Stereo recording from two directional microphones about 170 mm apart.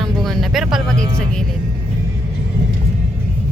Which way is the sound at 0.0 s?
Centre (ahead or behind).